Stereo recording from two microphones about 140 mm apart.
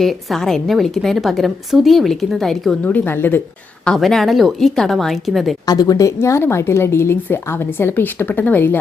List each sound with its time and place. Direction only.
0.0 s a woman's voice: centre (ahead or behind)
3.8 s a woman's voice: centre (ahead or behind)
5.6 s speech: 25° left (ahead or behind)